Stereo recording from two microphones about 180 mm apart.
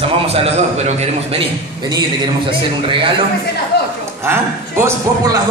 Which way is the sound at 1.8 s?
25° right (ahead or behind).